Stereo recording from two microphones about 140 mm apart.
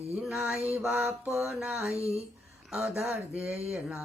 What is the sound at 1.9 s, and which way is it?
Speech, 20° left (ahead or behind).